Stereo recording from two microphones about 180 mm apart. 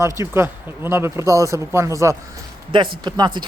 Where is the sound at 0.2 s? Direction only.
15° right (ahead or behind).